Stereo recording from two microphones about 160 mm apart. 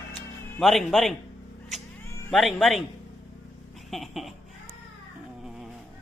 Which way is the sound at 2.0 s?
20° left (ahead or behind).